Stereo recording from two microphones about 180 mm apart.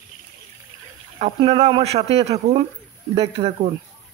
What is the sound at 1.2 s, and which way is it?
Speech, 30° right (ahead or behind).